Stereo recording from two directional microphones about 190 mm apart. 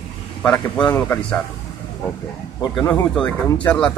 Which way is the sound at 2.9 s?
10° left (ahead or behind).